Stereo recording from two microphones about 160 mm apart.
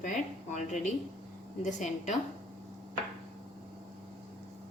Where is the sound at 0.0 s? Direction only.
50° left (ahead or behind).